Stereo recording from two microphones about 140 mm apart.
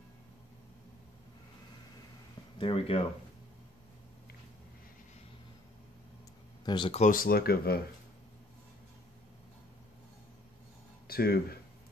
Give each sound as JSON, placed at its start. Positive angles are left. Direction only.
{"t": 2.6, "sound": "speech", "side_deg": 45}
{"t": 6.6, "sound": "speech", "side_deg": 35}
{"t": 6.9, "sound": "speech", "side_deg": 55}
{"t": 7.2, "sound": "speech", "side_deg": 90}
{"t": 11.1, "sound": "a sound", "side_deg": 90}